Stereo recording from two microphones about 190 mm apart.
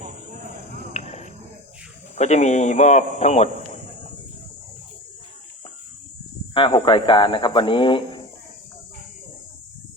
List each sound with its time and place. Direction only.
2.1 s a man's voice: 35° left (ahead or behind)
6.5 s speech: 25° left (ahead or behind)